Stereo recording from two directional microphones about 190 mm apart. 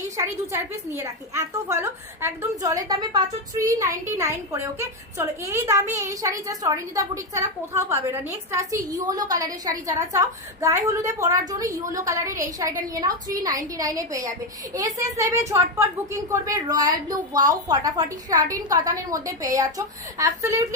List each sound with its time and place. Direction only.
0.2 s a woman's voice: 15° right (ahead or behind)